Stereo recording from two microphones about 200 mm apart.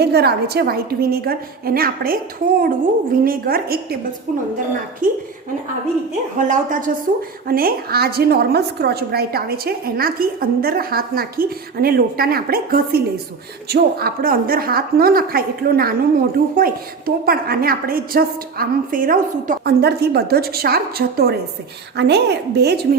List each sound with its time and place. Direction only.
0.0 s a woman's voice: 55° right (ahead or behind)
6.4 s a woman's voice: 40° right (ahead or behind); by 22.9 s 55° right (ahead or behind)